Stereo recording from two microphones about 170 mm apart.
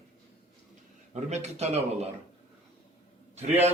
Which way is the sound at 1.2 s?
40° right (ahead or behind).